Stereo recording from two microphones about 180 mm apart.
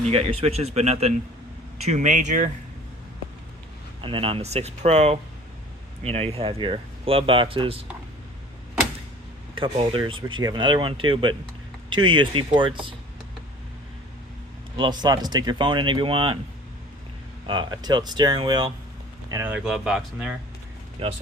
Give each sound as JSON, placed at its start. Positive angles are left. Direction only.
{"t": 0.0, "sound": "speech", "side_deg": -35}
{"t": 4.0, "sound": "speech", "side_deg": -30}
{"t": 9.6, "sound": "speech", "side_deg": -30}
{"t": 14.8, "sound": "speech", "side_deg": -25}
{"t": 17.4, "sound": "speech", "side_deg": -25}
{"t": 19.3, "sound": "speech", "side_deg": -10}
{"t": 21.0, "sound": "speech", "side_deg": -30}